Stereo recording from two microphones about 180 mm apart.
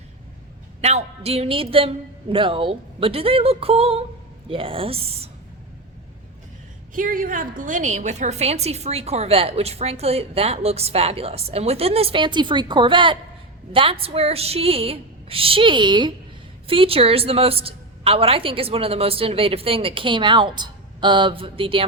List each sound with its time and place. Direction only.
0.8 s a woman's voice: 35° right (ahead or behind)
6.9 s a woman's voice: 50° right (ahead or behind); by 21.8 s 30° right (ahead or behind)